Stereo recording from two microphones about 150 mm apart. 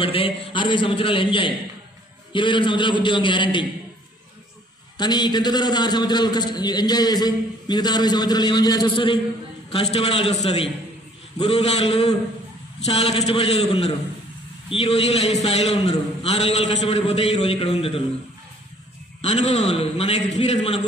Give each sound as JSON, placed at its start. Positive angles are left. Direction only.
{"t": 0.0, "sound": "a man's voice", "side_deg": 35}
{"t": 4.9, "sound": "a man's voice", "side_deg": 30}
{"t": 19.2, "sound": "a man's voice", "side_deg": 50}